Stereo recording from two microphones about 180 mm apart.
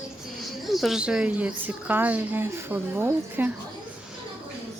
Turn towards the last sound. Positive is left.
turn(degrees=-10)  # may be behind; listen again after turning